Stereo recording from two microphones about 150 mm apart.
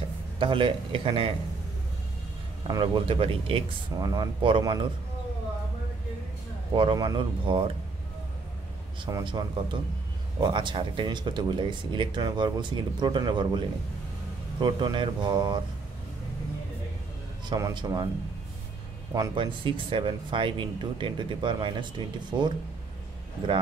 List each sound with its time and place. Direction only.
0.4 s speech: 35° right (ahead or behind)
2.7 s speech: 30° right (ahead or behind)
6.7 s speech: 30° right (ahead or behind)
9.0 s speech: 30° right (ahead or behind)
14.6 s speech: 30° right (ahead or behind)
17.5 s speech: 25° right (ahead or behind)
19.1 s speech: 30° right (ahead or behind)